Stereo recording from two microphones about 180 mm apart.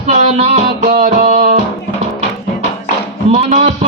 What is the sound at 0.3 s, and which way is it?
Music, 35° right (ahead or behind).